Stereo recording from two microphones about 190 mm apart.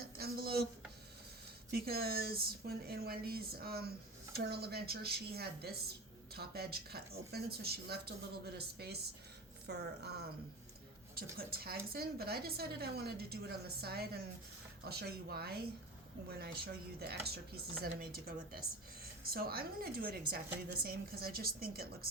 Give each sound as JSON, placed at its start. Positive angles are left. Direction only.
{"t": 0.2, "sound": "a sound", "side_deg": -55}
{"t": 1.7, "sound": "a woman's voice", "side_deg": -55}
{"t": 17.0, "sound": "a woman's voice", "side_deg": -55}